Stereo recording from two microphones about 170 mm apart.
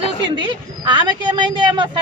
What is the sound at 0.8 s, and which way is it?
A woman's voice, 25° right (ahead or behind).